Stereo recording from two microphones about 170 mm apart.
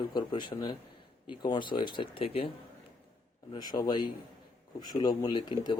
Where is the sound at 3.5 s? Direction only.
25° left (ahead or behind).